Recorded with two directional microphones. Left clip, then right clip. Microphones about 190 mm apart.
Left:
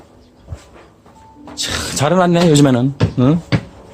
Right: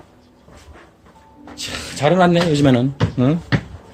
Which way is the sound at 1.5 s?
45° left (ahead or behind).